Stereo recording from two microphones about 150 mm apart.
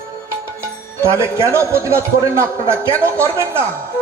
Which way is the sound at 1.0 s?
20° right (ahead or behind).